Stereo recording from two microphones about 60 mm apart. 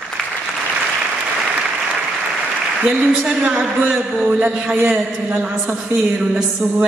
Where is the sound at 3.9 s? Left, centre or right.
Centre.